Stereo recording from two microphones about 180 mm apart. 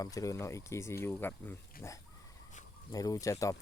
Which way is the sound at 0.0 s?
20° left (ahead or behind).